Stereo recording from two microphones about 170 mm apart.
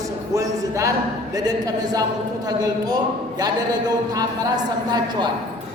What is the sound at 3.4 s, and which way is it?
A woman's voice, 25° right (ahead or behind).